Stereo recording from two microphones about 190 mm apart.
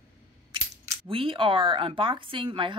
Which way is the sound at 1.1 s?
30° right (ahead or behind).